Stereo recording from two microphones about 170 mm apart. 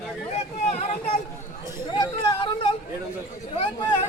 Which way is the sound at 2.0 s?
25° left (ahead or behind).